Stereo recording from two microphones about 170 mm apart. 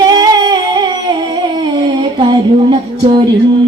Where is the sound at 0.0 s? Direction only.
25° right (ahead or behind).